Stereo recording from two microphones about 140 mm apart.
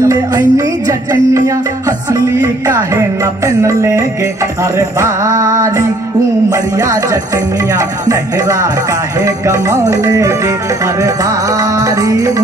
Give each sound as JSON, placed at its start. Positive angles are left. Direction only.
{"t": 0.0, "sound": "music", "side_deg": -25}
{"t": 9.2, "sound": "music", "side_deg": -25}
{"t": 11.8, "sound": "music", "side_deg": -25}